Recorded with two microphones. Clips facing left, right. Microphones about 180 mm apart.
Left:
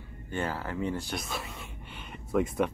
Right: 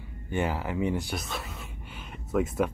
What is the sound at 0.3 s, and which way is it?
Speech, 15° right (ahead or behind).